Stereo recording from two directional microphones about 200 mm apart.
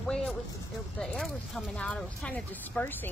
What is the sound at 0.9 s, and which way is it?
Speech, centre (ahead or behind).